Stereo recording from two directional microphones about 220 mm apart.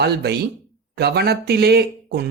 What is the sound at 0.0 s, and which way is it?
A man's voice, 45° right (ahead or behind).